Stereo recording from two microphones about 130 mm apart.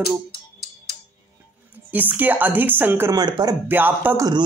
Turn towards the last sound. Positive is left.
turn(degrees=-10)  # may be behind; listen again after turning